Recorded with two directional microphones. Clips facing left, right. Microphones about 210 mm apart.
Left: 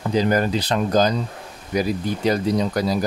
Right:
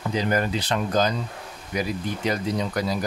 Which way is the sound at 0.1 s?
35° left (ahead or behind).